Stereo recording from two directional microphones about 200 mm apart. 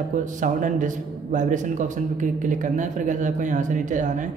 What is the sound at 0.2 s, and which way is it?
A man's voice, 40° right (ahead or behind).